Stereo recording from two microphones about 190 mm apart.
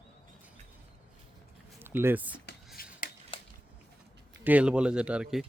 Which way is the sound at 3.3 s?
30° left (ahead or behind).